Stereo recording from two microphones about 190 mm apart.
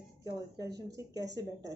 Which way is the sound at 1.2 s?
65° right (ahead or behind).